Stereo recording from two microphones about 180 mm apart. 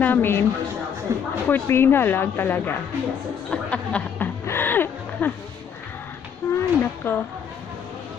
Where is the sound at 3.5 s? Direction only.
5° left (ahead or behind).